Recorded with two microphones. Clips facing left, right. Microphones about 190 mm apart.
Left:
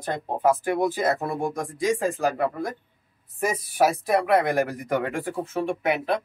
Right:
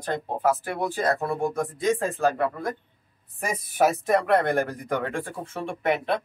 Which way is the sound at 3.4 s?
Centre (ahead or behind).